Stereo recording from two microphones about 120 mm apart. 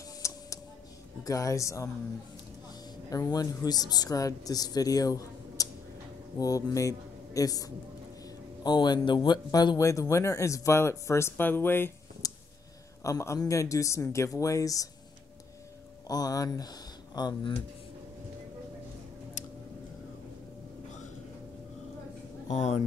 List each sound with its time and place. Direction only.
0.2 s tick: 25° left (ahead or behind)
1.2 s speech: 30° left (ahead or behind)
3.1 s speech: 30° left (ahead or behind)
12.2 s a sound: 30° left (ahead or behind)
13.0 s speech: 25° left (ahead or behind)
16.1 s speech: 30° left (ahead or behind)
22.5 s speech: 75° left (ahead or behind)